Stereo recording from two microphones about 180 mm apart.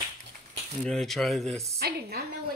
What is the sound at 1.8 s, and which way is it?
Speech, 60° right (ahead or behind).